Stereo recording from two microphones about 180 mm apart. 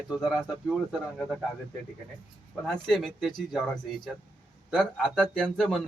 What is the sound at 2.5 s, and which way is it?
A man's voice, 5° left (ahead or behind).